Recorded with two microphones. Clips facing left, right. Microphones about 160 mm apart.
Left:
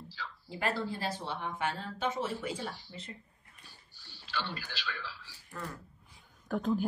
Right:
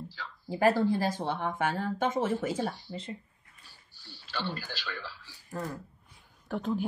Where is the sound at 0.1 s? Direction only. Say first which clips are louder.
Right 5 dB; 45° right (ahead or behind).